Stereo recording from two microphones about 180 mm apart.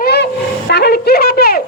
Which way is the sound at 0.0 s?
65° left (ahead or behind).